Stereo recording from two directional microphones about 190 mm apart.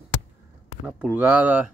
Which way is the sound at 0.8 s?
5° right (ahead or behind).